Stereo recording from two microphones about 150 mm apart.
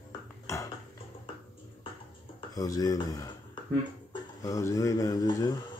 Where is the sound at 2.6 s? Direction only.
25° left (ahead or behind).